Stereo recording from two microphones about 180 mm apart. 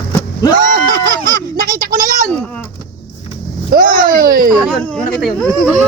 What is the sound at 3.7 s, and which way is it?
Speech, 50° right (ahead or behind).